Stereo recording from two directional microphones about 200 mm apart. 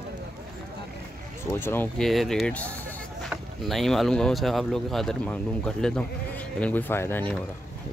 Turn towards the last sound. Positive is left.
turn(degrees=10)  # may be behind; listen again after turning